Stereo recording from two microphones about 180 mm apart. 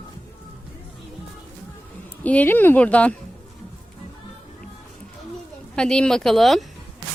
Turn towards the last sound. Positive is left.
turn(degrees=0)  # may be behind; listen again after turning